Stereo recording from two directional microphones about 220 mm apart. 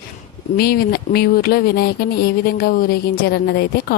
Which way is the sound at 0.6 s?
45° left (ahead or behind).